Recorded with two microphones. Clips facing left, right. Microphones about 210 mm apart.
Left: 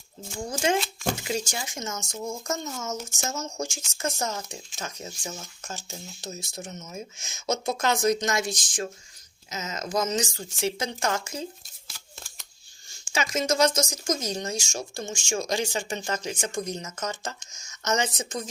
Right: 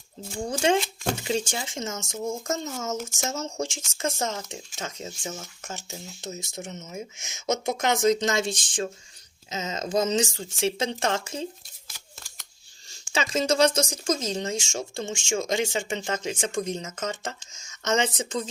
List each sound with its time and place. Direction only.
0.5 s speech: 30° right (ahead or behind)
2.1 s speech: 45° right (ahead or behind)
3.2 s speech: 30° right (ahead or behind)
13.1 s speech: 30° right (ahead or behind)